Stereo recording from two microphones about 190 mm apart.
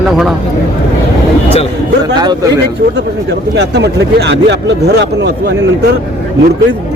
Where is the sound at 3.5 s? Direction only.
65° right (ahead or behind).